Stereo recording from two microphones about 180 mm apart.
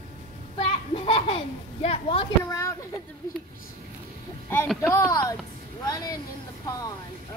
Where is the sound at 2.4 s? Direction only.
15° left (ahead or behind).